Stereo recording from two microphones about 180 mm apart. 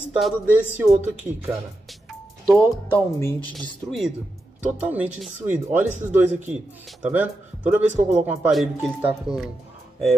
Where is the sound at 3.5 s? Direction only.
Centre (ahead or behind).